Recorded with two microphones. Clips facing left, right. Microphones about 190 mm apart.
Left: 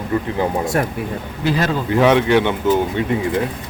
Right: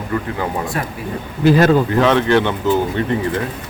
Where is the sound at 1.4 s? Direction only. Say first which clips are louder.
Right 8 dB; 50° right (ahead or behind).